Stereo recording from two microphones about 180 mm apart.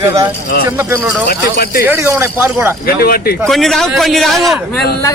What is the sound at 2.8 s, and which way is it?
Speech, 55° left (ahead or behind).